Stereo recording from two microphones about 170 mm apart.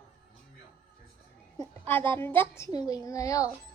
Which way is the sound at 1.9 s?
10° left (ahead or behind).